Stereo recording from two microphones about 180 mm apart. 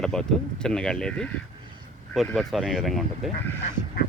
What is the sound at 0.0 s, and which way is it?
Speech, 5° left (ahead or behind).